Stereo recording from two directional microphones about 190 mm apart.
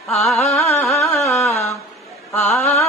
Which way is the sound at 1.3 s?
15° left (ahead or behind).